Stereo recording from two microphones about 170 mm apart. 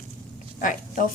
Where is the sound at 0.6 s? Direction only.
50° left (ahead or behind).